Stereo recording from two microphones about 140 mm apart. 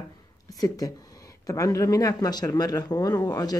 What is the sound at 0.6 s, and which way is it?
Speech, 25° left (ahead or behind).